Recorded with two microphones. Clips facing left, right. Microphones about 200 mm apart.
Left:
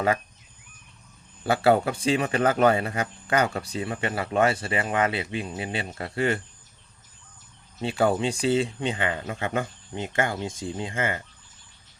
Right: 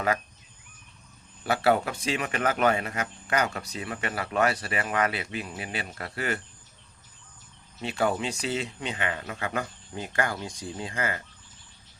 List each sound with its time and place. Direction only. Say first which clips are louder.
1.5 s speech: left 3 dB; 30° left (ahead or behind)
7.8 s speech: left 4 dB; 30° left (ahead or behind)